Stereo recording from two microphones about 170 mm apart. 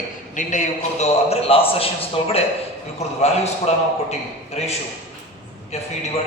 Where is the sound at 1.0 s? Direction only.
35° left (ahead or behind).